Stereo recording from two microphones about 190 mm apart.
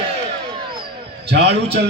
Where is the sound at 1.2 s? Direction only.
60° right (ahead or behind).